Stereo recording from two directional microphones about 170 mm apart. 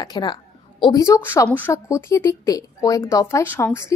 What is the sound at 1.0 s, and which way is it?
A woman's voice, 15° left (ahead or behind).